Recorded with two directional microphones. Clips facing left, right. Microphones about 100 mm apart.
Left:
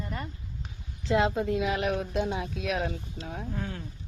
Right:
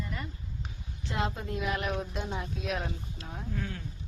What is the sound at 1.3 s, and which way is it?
A woman's voice, 90° left.